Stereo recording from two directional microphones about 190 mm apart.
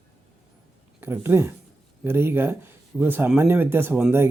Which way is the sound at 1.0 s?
10° right (ahead or behind).